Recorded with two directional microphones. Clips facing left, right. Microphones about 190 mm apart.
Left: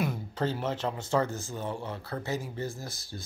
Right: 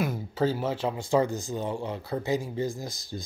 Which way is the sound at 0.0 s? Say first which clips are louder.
Right 4 dB; 5° right (ahead or behind).